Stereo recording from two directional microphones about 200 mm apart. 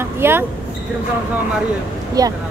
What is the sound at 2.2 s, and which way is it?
Speech, 20° right (ahead or behind).